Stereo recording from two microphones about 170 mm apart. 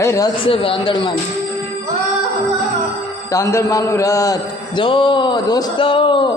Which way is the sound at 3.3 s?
20° left (ahead or behind).